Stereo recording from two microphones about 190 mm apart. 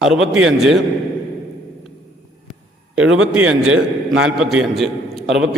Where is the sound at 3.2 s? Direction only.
5° right (ahead or behind).